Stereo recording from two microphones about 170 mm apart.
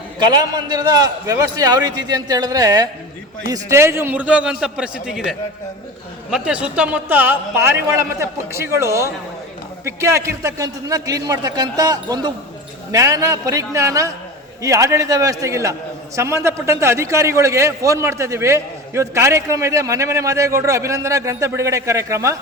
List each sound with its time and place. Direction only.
0.5 s a man's voice: 25° right (ahead or behind)